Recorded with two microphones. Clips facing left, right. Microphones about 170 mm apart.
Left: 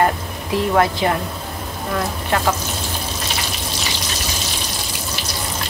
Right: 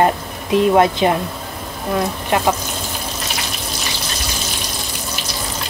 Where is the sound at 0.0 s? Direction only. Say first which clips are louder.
Right 2 dB; 20° right (ahead or behind).